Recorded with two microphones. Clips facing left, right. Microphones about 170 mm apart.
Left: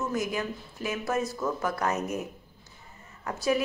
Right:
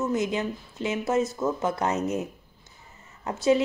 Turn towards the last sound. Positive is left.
turn(degrees=-25)  # may be behind; listen again after turning